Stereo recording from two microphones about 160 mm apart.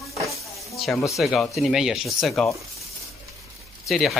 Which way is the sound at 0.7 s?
Centre (ahead or behind).